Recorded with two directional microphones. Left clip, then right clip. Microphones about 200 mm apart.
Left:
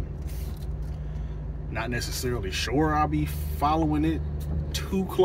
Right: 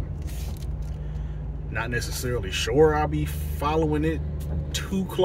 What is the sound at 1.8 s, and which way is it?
Speech, 10° right (ahead or behind).